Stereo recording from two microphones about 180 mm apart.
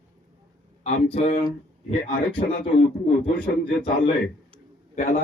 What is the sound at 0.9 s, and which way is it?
Speech, 35° left (ahead or behind).